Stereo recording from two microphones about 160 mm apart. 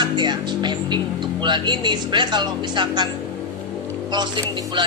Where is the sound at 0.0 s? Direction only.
30° right (ahead or behind).